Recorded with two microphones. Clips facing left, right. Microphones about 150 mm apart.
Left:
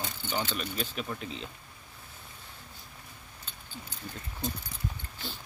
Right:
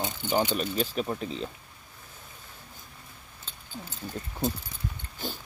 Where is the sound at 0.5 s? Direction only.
35° right (ahead or behind).